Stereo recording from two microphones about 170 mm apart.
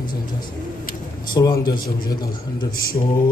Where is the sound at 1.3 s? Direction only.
25° left (ahead or behind).